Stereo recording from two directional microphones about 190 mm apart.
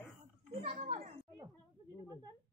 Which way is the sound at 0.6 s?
35° right (ahead or behind).